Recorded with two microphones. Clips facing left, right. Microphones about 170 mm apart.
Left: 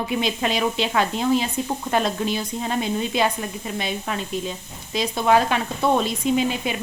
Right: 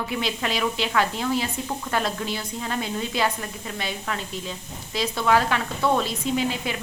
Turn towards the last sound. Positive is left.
turn(degrees=20)  # may be behind; listen again after turning